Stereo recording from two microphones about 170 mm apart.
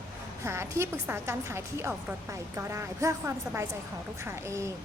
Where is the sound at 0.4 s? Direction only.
15° right (ahead or behind).